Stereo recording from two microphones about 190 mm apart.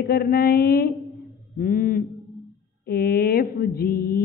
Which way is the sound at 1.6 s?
45° left (ahead or behind).